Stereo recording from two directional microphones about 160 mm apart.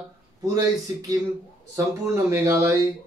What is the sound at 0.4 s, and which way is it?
Speech, 20° right (ahead or behind).